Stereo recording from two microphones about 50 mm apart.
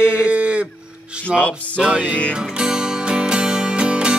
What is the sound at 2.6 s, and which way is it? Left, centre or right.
Music, centre.